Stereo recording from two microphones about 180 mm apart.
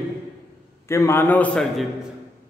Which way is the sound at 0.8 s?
15° left (ahead or behind).